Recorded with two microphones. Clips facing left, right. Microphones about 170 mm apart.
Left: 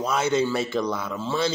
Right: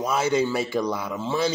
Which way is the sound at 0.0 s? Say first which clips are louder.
Even; 10° right (ahead or behind).